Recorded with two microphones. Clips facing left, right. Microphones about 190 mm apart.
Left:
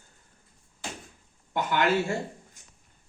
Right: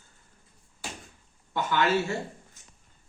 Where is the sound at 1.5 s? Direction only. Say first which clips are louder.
Even; 15° left (ahead or behind).